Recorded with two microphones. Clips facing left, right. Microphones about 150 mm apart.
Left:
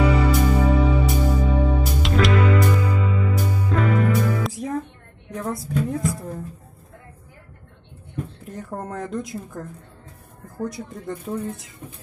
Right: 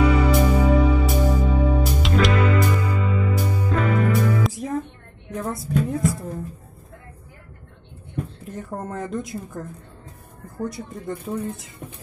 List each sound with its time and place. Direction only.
0.0 s music: centre (ahead or behind)
5.3 s a sound: centre (ahead or behind)
8.5 s a woman's voice: centre (ahead or behind)